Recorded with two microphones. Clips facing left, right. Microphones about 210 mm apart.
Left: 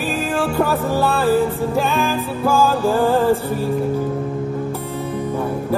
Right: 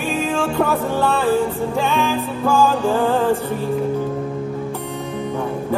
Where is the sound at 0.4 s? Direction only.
5° left (ahead or behind).